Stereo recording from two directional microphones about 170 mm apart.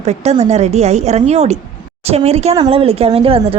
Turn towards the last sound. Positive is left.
turn(degrees=-35)  # may be behind; listen again after turning